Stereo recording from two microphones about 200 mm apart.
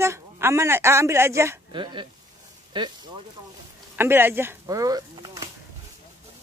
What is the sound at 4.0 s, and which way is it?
Speech, 10° right (ahead or behind).